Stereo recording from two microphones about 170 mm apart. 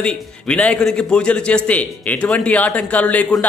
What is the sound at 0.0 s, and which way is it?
A man's voice, 5° left (ahead or behind).